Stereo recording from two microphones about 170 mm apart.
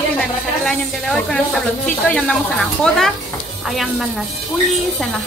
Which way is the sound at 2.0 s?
10° left (ahead or behind).